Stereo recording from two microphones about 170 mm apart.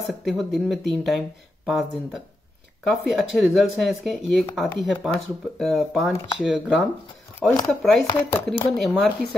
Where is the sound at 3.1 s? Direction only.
Centre (ahead or behind).